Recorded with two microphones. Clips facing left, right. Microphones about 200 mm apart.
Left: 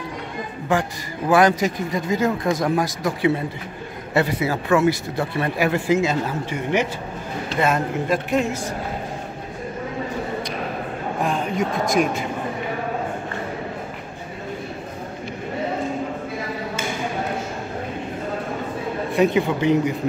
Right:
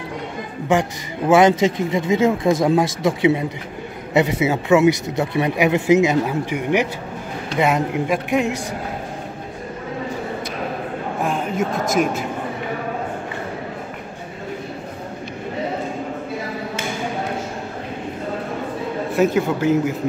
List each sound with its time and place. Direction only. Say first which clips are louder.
1.3 s speech: right 3 dB; 25° right (ahead or behind)
11.2 s speech: right 1 dB; centre (ahead or behind)
19.1 s speech: right 1 dB; centre (ahead or behind)